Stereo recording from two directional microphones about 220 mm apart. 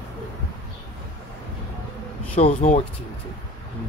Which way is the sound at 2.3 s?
30° left (ahead or behind).